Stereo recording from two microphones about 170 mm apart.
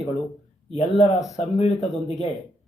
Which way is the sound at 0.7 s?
40° left (ahead or behind).